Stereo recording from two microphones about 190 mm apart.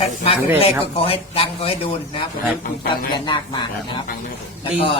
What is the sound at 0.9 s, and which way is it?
Speech, 30° left (ahead or behind).